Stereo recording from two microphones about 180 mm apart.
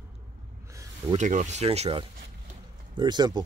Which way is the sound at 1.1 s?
40° right (ahead or behind).